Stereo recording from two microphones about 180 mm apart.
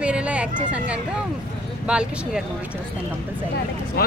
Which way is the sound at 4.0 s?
55° left (ahead or behind).